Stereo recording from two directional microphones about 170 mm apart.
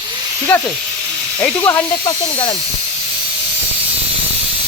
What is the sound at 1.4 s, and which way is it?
Speech, 15° left (ahead or behind).